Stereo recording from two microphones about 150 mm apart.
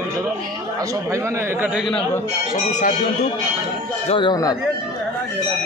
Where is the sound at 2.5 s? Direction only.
50° left (ahead or behind).